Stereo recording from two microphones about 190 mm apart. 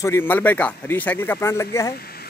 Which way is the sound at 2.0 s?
55° left (ahead or behind).